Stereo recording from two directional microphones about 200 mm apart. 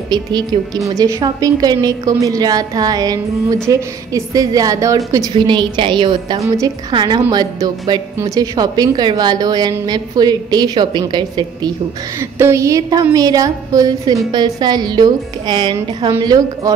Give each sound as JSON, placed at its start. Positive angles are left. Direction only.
{"t": 0.1, "sound": "a woman's voice", "side_deg": -20}